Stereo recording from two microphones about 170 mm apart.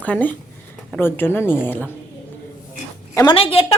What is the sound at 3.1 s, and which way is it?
Speech, 20° left (ahead or behind).